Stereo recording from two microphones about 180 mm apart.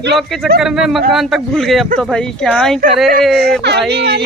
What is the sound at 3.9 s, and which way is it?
Speech, 65° right (ahead or behind).